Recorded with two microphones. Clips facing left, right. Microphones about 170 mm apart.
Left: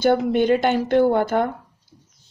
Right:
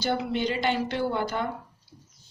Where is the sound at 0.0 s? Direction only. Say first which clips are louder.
Left 9 dB; 50° left (ahead or behind).